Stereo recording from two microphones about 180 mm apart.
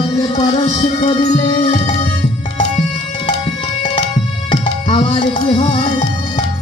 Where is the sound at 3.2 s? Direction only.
30° left (ahead or behind).